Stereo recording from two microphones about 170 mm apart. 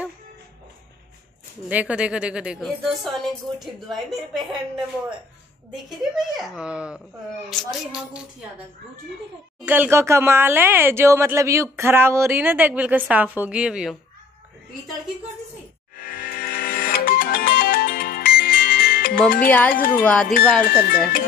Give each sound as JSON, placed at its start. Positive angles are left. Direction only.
{"t": 1.7, "sound": "a woman's voice", "side_deg": -10}
{"t": 5.9, "sound": "a woman's voice", "side_deg": 0}
{"t": 9.7, "sound": "speech", "side_deg": -10}
{"t": 16.0, "sound": "music", "side_deg": 55}
{"t": 19.4, "sound": "speech", "side_deg": 10}
{"t": 19.7, "sound": "speech", "side_deg": 55}
{"t": 20.0, "sound": "speech", "side_deg": 10}
{"t": 20.6, "sound": "speech", "side_deg": 55}